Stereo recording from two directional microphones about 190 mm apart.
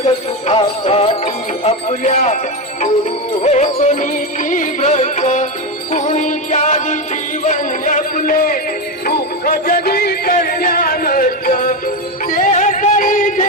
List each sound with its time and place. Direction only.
0.0 s music: 30° left (ahead or behind)
3.4 s music: 35° left (ahead or behind)